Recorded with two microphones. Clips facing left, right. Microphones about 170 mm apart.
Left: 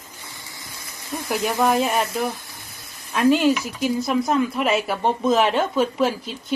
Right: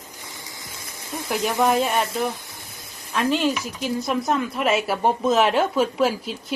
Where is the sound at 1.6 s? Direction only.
Centre (ahead or behind).